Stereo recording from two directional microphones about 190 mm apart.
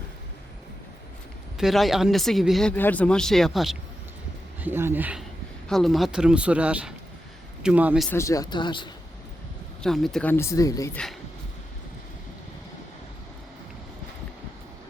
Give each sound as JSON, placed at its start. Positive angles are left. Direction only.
{"t": 1.5, "sound": "speech", "side_deg": 0}
{"t": 4.6, "sound": "speech", "side_deg": -10}
{"t": 5.6, "sound": "speech", "side_deg": 0}
{"t": 8.1, "sound": "speech", "side_deg": 15}
{"t": 9.8, "sound": "speech", "side_deg": 0}